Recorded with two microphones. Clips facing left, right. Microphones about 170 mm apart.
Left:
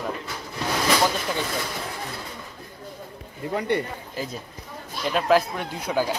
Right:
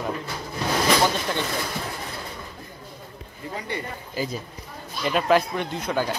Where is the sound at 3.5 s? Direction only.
60° left (ahead or behind).